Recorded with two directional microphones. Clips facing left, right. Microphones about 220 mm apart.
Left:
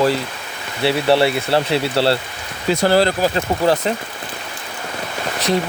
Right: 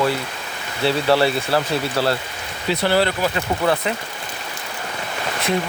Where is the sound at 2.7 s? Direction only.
45° left (ahead or behind).